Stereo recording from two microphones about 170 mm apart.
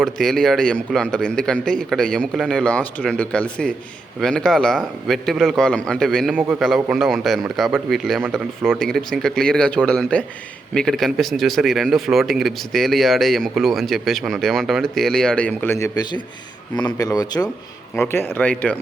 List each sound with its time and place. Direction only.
0.0 s speech: centre (ahead or behind); by 17.5 s 20° left (ahead or behind)
17.9 s speech: 10° left (ahead or behind)